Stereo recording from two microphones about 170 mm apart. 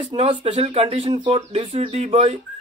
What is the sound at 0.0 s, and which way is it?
Speech, 35° right (ahead or behind).